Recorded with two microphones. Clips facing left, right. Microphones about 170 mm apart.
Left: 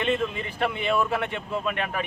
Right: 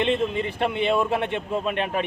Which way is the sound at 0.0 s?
25° right (ahead or behind).